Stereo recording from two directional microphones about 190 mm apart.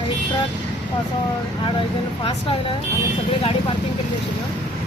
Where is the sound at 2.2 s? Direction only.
30° left (ahead or behind).